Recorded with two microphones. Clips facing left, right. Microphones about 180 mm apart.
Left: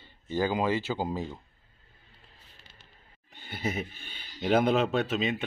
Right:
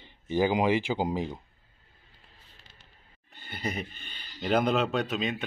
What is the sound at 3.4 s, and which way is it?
A man's voice, 5° left (ahead or behind).